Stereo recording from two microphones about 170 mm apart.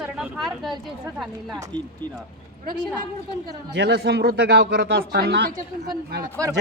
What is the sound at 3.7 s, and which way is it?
Speech, 80° right.